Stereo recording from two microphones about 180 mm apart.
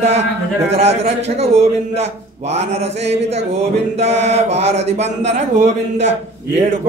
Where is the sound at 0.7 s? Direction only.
35° right (ahead or behind).